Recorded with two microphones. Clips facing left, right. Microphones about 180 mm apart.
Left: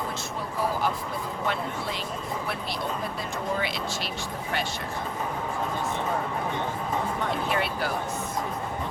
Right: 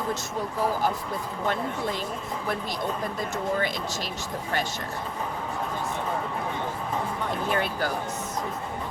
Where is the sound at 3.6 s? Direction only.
45° right (ahead or behind).